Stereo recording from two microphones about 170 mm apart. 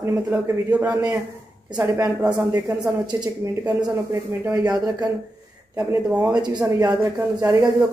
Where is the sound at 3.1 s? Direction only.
25° right (ahead or behind).